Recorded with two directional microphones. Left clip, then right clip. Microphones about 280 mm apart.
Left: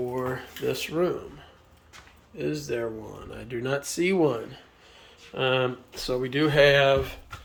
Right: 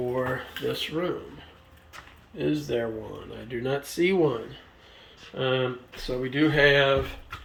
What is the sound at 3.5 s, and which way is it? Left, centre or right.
Speech, centre.